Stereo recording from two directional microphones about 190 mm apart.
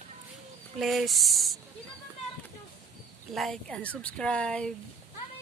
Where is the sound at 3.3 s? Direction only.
Centre (ahead or behind).